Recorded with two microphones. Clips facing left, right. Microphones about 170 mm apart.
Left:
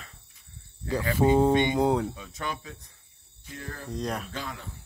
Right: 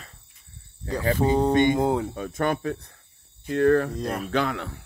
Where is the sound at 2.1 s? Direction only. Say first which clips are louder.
Right 10 dB; 50° right (ahead or behind); by 3.9 s 70° right (ahead or behind).